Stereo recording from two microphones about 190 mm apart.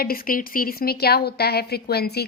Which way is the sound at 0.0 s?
50° left (ahead or behind).